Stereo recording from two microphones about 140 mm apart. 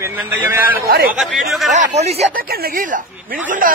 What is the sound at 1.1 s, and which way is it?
Speech, centre (ahead or behind).